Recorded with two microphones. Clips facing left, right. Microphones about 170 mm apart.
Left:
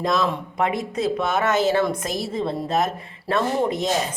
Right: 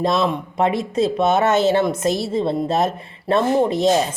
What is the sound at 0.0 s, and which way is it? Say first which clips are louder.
Speech: right 3 dB; 25° right (ahead or behind).